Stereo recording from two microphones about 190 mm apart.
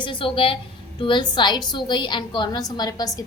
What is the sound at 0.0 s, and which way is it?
A woman's voice, 25° left (ahead or behind).